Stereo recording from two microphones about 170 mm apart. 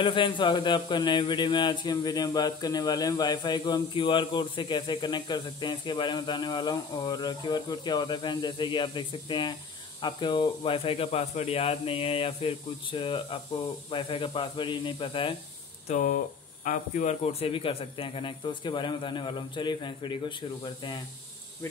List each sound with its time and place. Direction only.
0.0 s speech: 30° left (ahead or behind)
15.9 s speech: 50° left (ahead or behind); by 21.0 s 25° left (ahead or behind)